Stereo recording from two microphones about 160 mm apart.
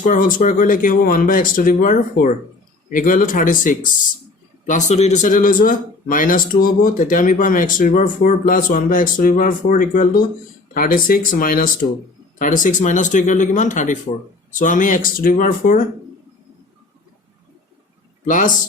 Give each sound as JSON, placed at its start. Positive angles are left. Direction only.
{"t": 0.0, "sound": "a man's voice", "side_deg": 55}
{"t": 18.3, "sound": "a man's voice", "side_deg": 55}